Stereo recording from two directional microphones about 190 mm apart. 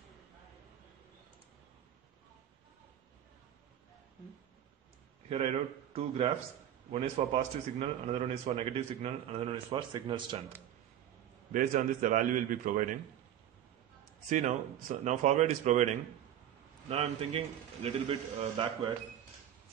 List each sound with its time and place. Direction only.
5.3 s a man's voice: 35° right (ahead or behind)
11.5 s a man's voice: 45° right (ahead or behind)
14.3 s speech: 40° right (ahead or behind)